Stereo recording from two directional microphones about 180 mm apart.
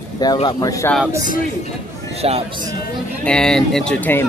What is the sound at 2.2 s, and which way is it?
Speech, 35° right (ahead or behind).